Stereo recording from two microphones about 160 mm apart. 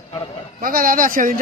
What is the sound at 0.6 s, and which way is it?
Speech, 60° right (ahead or behind).